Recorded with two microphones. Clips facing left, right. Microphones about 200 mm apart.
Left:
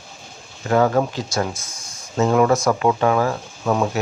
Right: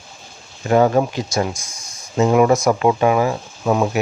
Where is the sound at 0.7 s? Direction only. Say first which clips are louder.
Right 3 dB; 20° right (ahead or behind).